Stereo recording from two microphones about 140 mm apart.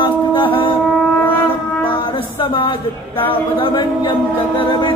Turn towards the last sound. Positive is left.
turn(degrees=35)  # may be behind; listen again after turning